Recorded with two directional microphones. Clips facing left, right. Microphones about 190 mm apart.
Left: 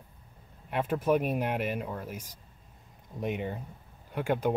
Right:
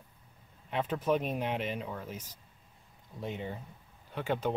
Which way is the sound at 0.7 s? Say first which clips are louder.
Left 3 dB; 10° left (ahead or behind).